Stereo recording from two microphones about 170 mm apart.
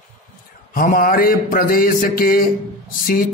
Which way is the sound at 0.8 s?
55° left (ahead or behind).